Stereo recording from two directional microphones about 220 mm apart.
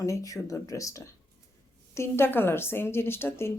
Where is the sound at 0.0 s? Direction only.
15° left (ahead or behind).